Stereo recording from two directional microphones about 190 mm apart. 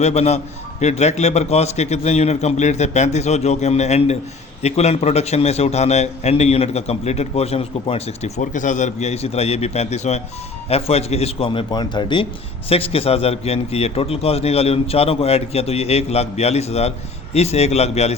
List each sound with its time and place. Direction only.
0.0 s a man's voice: 35° left (ahead or behind)